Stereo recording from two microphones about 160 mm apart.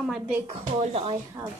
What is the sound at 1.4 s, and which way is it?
Speech, 30° right (ahead or behind).